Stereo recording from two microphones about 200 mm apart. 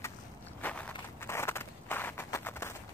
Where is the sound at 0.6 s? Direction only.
5° left (ahead or behind).